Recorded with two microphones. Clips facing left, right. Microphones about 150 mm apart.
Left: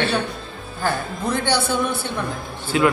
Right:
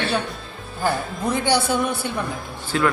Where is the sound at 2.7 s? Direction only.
10° left (ahead or behind).